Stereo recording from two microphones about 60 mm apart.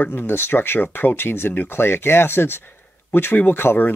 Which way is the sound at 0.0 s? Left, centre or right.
Left.